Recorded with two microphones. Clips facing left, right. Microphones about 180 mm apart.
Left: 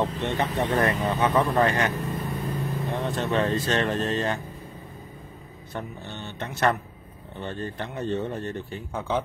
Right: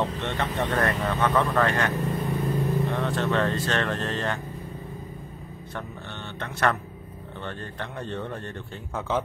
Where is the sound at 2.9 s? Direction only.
20° left (ahead or behind).